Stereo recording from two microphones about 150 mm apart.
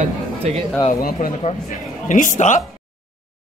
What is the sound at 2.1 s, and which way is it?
Speech, 60° left (ahead or behind).